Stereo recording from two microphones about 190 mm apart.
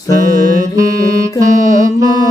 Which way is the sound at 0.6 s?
15° right (ahead or behind).